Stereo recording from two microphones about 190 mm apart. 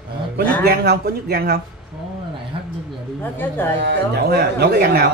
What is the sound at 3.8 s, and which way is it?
Speech, 60° right (ahead or behind).